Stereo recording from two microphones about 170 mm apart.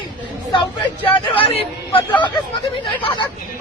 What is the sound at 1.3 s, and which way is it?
Speech, 35° left (ahead or behind).